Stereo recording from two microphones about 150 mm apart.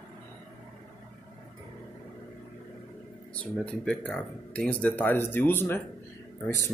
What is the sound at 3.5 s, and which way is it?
Speech, 5° left (ahead or behind).